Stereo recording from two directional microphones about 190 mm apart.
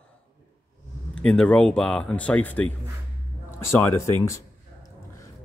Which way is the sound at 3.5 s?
15° left (ahead or behind).